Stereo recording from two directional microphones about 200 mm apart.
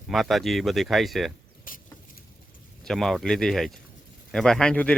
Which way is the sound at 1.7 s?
45° left (ahead or behind).